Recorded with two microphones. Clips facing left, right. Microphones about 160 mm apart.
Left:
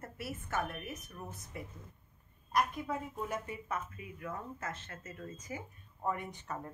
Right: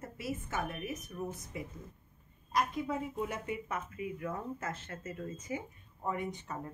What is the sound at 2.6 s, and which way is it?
Speech, 20° right (ahead or behind).